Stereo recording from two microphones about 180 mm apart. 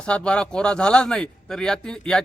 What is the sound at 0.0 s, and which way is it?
A man's voice, 5° left (ahead or behind).